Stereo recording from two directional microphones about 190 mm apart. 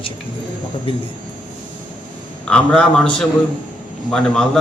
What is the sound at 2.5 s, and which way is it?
A man's voice, 5° left (ahead or behind).